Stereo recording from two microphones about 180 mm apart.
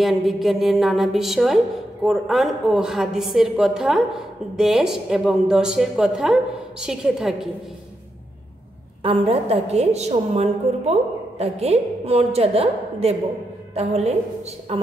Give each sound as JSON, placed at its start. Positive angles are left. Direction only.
{"t": 0.0, "sound": "a woman's voice", "side_deg": 0}
{"t": 9.0, "sound": "a woman's voice", "side_deg": -30}